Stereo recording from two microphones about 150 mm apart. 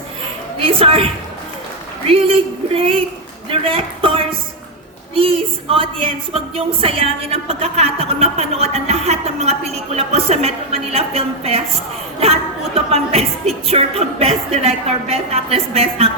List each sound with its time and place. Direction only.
0.6 s speech: 40° right (ahead or behind)
2.0 s speech: 40° right (ahead or behind)
5.7 s a woman's voice: 40° right (ahead or behind)